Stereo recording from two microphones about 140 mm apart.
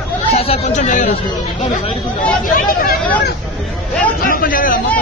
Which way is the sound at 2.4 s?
85° left.